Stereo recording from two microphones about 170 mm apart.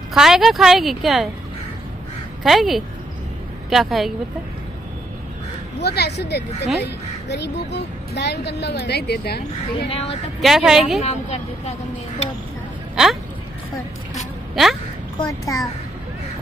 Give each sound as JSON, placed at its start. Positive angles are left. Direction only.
{"t": 0.1, "sound": "a woman's voice", "side_deg": -5}
{"t": 2.4, "sound": "a woman's voice", "side_deg": 0}
{"t": 5.8, "sound": "a woman's voice", "side_deg": 80}
{"t": 9.8, "sound": "a woman's voice", "side_deg": 35}
{"t": 10.4, "sound": "a woman's voice", "side_deg": -5}
{"t": 11.0, "sound": "a woman's voice", "side_deg": 35}
{"t": 12.9, "sound": "speech", "side_deg": 0}
{"t": 14.5, "sound": "speech", "side_deg": 0}
{"t": 15.2, "sound": "a child's voice", "side_deg": 20}